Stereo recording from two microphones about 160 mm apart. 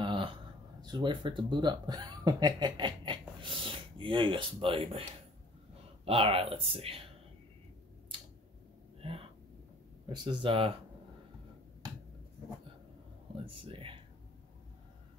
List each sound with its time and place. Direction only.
0.0 s speech: 30° right (ahead or behind)
6.0 s speech: 35° right (ahead or behind)
9.0 s a sound: 35° right (ahead or behind)
10.0 s speech: 30° right (ahead or behind)
13.5 s speech: 35° right (ahead or behind)